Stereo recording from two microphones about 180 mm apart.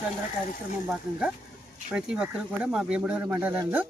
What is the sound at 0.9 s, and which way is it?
Speech, 5° right (ahead or behind).